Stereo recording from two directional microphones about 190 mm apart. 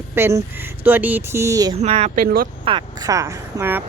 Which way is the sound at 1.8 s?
35° right (ahead or behind).